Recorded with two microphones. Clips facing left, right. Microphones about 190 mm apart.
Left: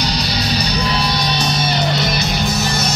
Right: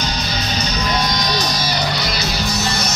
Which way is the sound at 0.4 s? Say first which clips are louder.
Left 3 dB; 35° left (ahead or behind).